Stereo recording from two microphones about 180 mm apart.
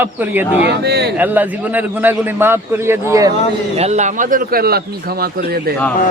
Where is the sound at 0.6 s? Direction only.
65° right (ahead or behind).